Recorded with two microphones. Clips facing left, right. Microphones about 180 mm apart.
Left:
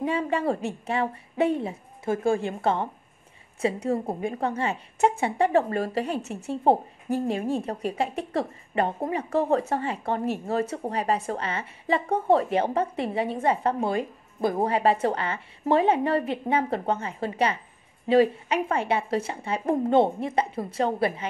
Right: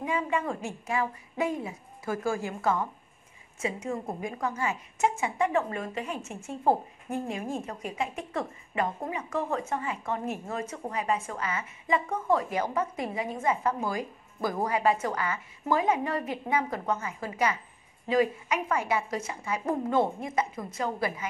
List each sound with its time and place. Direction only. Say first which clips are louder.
0.0 s a woman's voice: left 4 dB; 35° left (ahead or behind)